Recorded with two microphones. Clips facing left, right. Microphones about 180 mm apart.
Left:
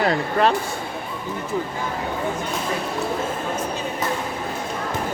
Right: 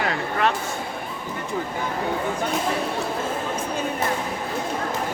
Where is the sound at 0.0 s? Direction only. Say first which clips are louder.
Left 4 dB; 35° left (ahead or behind).